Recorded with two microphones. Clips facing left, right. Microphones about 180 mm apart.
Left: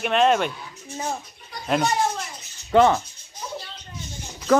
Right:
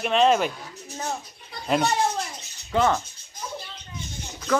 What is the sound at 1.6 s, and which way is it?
Speech, centre (ahead or behind).